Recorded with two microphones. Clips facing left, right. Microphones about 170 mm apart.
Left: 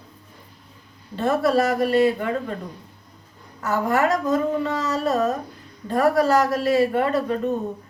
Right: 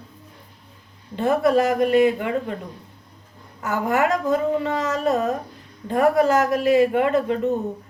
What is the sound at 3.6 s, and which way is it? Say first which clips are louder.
Speech: even; 15° right (ahead or behind).